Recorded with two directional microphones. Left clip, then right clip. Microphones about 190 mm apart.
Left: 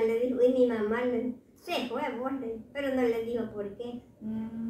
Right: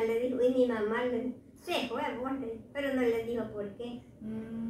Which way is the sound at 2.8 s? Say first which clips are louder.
Left 2 dB; 15° left (ahead or behind).